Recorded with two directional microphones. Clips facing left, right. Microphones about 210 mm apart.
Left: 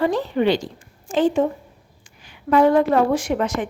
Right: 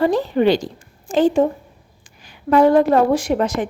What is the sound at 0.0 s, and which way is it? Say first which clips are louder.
A woman's voice: right 3 dB; 40° right (ahead or behind).